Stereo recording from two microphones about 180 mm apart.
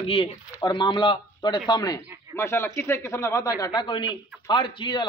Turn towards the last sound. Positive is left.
turn(degrees=25)  # may be behind; listen again after turning